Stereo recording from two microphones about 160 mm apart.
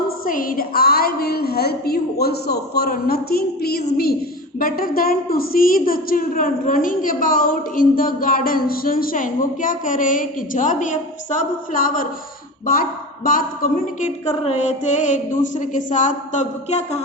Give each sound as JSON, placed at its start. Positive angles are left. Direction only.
{"t": 0.3, "sound": "a woman's voice", "side_deg": 60}
{"t": 4.6, "sound": "a woman's voice", "side_deg": 65}
{"t": 14.3, "sound": "mantra", "side_deg": 45}